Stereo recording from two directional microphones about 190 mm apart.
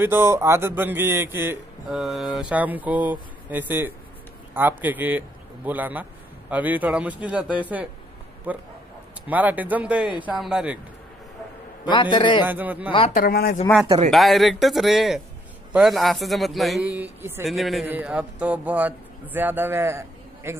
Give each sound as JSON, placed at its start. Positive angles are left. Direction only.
{"t": 0.0, "sound": "a man's voice", "side_deg": -15}
{"t": 11.8, "sound": "a man's voice", "side_deg": 25}
{"t": 12.4, "sound": "a man's voice", "side_deg": -10}
{"t": 13.1, "sound": "speech", "side_deg": 50}
{"t": 14.1, "sound": "speech", "side_deg": 0}
{"t": 17.5, "sound": "a man's voice", "side_deg": 0}